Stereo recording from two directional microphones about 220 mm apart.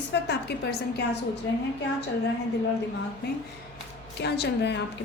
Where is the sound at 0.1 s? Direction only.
50° left (ahead or behind).